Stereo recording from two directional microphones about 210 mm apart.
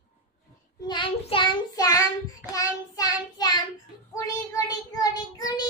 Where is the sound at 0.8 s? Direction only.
25° left (ahead or behind).